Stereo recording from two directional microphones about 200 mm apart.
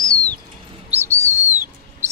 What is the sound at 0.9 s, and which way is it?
Bird, 10° right (ahead or behind).